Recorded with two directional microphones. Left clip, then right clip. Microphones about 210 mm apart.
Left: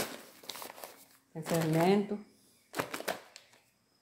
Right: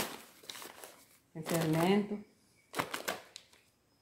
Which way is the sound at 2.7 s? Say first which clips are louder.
Left 1 dB; 10° left (ahead or behind).